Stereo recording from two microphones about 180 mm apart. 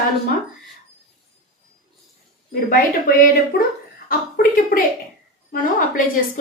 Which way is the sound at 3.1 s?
50° left (ahead or behind).